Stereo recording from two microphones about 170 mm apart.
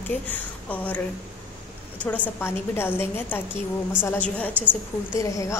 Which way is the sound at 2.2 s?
15° left (ahead or behind).